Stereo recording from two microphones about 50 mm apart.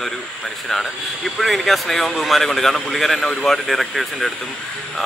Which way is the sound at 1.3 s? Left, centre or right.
Centre.